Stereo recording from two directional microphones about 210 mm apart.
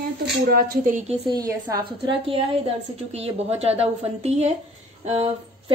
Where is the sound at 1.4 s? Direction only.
15° right (ahead or behind).